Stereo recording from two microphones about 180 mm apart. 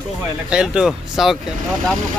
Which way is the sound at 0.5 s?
5° right (ahead or behind).